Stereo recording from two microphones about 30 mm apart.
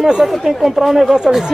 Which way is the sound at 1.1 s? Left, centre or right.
Centre.